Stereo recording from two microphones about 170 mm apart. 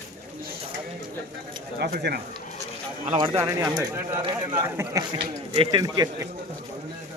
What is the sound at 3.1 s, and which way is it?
Speech, 30° right (ahead or behind).